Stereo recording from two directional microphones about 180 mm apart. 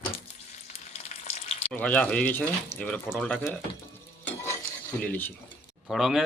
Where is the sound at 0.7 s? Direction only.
35° left (ahead or behind).